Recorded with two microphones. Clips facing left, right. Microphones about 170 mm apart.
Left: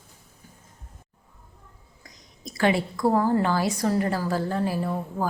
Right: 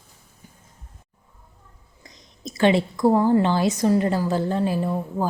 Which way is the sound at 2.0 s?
25° right (ahead or behind).